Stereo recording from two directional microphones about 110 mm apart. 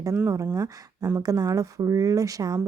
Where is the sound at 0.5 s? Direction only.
30° right (ahead or behind).